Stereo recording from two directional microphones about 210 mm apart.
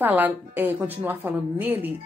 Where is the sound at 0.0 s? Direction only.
10° right (ahead or behind).